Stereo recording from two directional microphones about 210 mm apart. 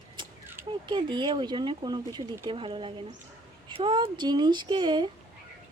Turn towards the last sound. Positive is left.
turn(degrees=-20)  # may be behind; listen again after turning